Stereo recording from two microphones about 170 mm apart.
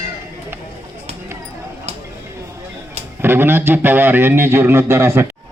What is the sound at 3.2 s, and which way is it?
A man's voice, 15° right (ahead or behind).